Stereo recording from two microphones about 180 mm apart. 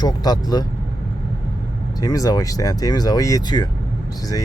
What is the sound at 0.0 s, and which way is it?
Speech, 20° left (ahead or behind).